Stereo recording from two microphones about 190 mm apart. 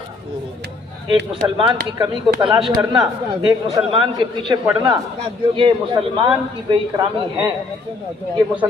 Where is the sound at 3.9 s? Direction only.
25° right (ahead or behind).